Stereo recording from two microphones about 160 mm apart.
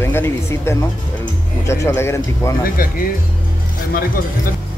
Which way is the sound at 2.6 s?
60° left (ahead or behind).